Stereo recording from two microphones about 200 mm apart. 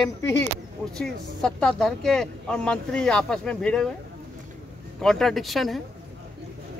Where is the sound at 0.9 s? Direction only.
5° left (ahead or behind).